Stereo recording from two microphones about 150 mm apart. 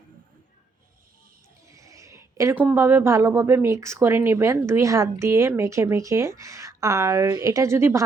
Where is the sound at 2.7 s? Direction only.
15° right (ahead or behind).